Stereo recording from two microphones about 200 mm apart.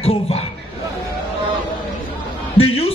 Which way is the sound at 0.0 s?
30° left (ahead or behind).